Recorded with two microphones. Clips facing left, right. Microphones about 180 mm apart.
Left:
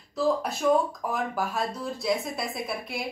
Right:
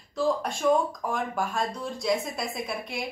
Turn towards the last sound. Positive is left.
turn(degrees=0)  # may be behind; listen again after turning